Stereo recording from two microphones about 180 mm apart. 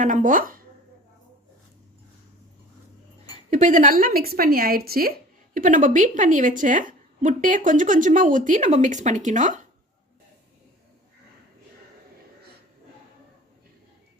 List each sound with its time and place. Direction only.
0.0 s a woman's voice: 45° right (ahead or behind)
3.5 s speech: 45° right (ahead or behind)
5.5 s a woman's voice: 45° right (ahead or behind)